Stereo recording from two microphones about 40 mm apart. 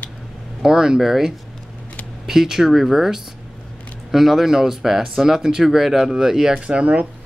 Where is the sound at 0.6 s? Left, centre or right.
Centre.